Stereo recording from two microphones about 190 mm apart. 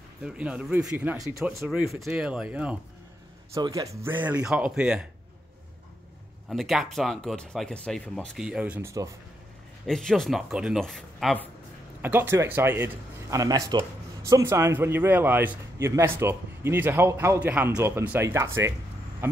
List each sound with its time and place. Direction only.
0.2 s speech: 5° right (ahead or behind)
3.5 s speech: 20° right (ahead or behind)
6.5 s speech: centre (ahead or behind)
9.8 s speech: centre (ahead or behind)
12.0 s speech: 10° right (ahead or behind)